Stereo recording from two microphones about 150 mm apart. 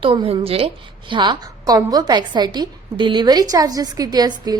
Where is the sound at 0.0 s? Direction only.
35° right (ahead or behind).